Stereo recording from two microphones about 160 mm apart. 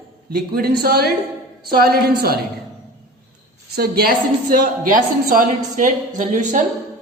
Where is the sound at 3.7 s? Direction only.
75° right (ahead or behind); by 6.6 s 55° right (ahead or behind).